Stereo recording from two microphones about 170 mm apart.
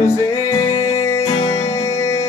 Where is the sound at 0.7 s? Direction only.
15° left (ahead or behind).